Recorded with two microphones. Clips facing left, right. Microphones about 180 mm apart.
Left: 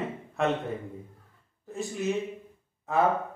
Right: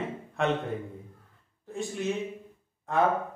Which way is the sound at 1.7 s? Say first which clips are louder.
Left 1 dB; centre (ahead or behind).